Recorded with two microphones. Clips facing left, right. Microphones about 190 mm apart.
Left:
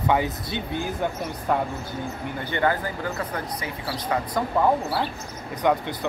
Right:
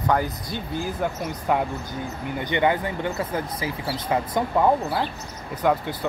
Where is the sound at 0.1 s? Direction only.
Centre (ahead or behind).